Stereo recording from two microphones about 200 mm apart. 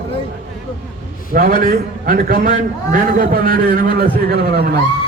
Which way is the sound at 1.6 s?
45° right (ahead or behind).